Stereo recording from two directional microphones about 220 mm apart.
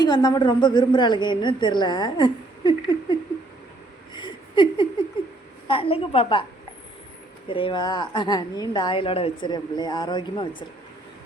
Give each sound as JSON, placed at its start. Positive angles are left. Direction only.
{"t": 0.0, "sound": "a woman's voice", "side_deg": 20}
{"t": 4.1, "sound": "a sound", "side_deg": 20}
{"t": 5.6, "sound": "a woman's voice", "side_deg": 25}
{"t": 7.4, "sound": "a woman's voice", "side_deg": 25}